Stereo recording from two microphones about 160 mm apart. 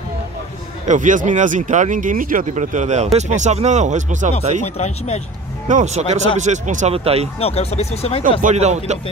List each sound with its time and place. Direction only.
0.8 s speech: 50° right (ahead or behind)
4.7 s speech: 40° left (ahead or behind)
5.7 s speech: 50° right (ahead or behind)
7.3 s speech: 40° left (ahead or behind)
8.4 s speech: 50° right (ahead or behind)